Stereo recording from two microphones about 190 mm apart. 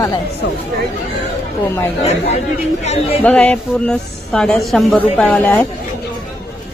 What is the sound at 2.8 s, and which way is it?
Speech, 35° left (ahead or behind).